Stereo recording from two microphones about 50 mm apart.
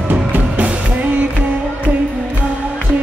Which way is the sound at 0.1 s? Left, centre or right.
Right.